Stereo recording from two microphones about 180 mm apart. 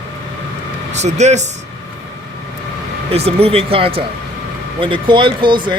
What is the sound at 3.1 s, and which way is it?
A man's voice, 35° right (ahead or behind).